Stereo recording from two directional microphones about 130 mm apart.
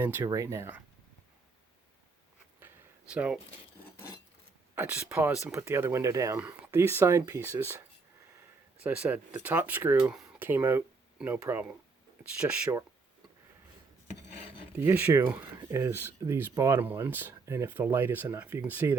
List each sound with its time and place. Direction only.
0.0 s speech: 15° right (ahead or behind)
2.6 s a sound: 15° right (ahead or behind)
4.7 s speech: 15° right (ahead or behind)
8.8 s speech: 10° right (ahead or behind)
14.8 s speech: 15° right (ahead or behind)